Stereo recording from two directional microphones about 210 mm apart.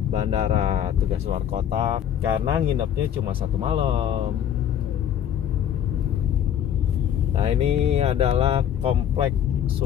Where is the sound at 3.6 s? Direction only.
25° right (ahead or behind).